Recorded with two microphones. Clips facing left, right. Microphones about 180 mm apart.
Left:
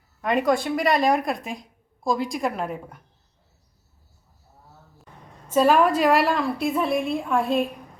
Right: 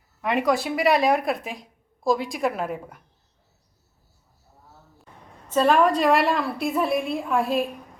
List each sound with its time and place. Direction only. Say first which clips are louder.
0.2 s a woman's voice: left 1 dB; 5° right (ahead or behind)
5.5 s a woman's voice: left 1 dB; 5° left (ahead or behind)